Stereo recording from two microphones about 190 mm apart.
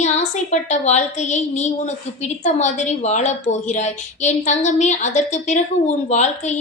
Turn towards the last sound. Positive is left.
turn(degrees=35)  # may be behind; listen again after turning